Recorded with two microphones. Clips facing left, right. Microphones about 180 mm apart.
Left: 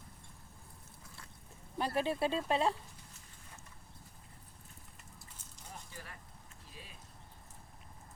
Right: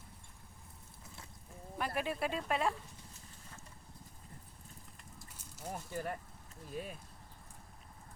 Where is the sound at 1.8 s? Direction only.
30° left (ahead or behind).